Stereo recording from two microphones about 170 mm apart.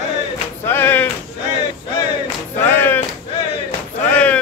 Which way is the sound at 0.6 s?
15° left (ahead or behind).